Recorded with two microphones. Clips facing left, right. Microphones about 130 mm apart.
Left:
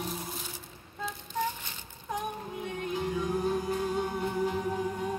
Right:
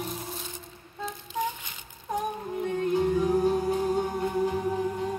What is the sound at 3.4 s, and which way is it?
Music, 30° right (ahead or behind).